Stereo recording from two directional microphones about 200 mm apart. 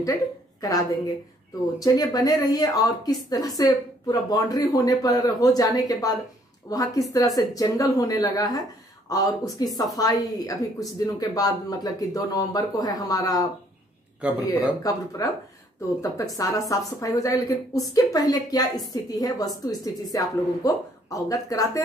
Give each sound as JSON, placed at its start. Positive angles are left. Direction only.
{"t": 0.6, "sound": "speech", "side_deg": 20}
{"t": 14.2, "sound": "speech", "side_deg": -5}
{"t": 14.8, "sound": "speech", "side_deg": 20}